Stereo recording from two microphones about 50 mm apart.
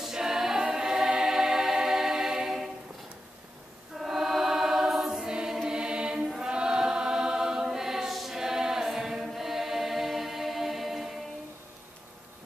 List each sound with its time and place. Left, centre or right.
0.0 s choir: centre
4.0 s choir: centre
5.7 s mantra: centre
6.4 s choir: centre